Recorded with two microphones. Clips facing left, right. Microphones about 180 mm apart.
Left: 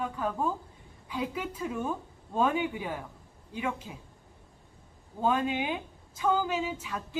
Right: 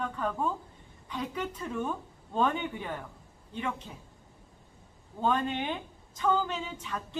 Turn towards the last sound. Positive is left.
turn(degrees=10)  # may be behind; listen again after turning